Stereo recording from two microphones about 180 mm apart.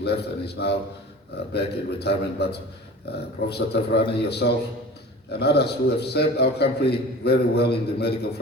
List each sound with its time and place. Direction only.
0.0 s a man's voice: 65° left (ahead or behind)